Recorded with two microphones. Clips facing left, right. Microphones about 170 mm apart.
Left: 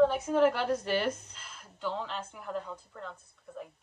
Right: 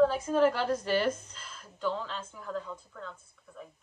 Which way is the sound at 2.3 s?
65° left (ahead or behind).